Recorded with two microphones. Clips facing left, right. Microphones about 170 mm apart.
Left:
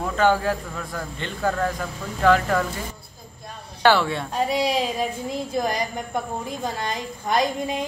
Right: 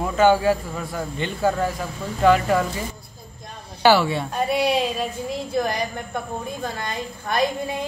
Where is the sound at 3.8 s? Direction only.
5° right (ahead or behind).